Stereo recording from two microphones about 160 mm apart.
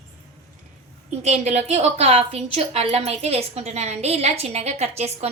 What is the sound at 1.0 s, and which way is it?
A woman's voice, 45° right (ahead or behind).